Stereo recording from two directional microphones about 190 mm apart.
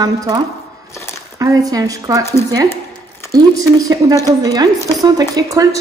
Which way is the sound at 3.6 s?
20° right (ahead or behind).